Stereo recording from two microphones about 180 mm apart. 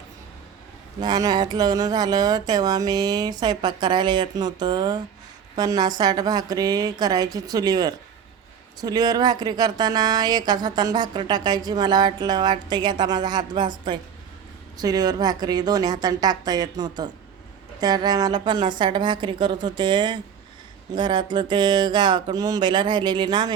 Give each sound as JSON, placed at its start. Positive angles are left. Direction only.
{"t": 1.0, "sound": "speech", "side_deg": -20}